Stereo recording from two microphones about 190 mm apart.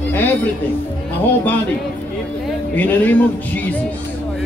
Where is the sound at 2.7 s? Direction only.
10° left (ahead or behind).